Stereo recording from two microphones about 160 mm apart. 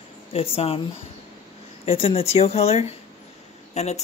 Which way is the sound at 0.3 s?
35° left (ahead or behind).